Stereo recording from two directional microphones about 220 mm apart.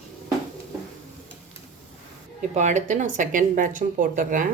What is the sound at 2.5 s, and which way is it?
Speech, 35° right (ahead or behind).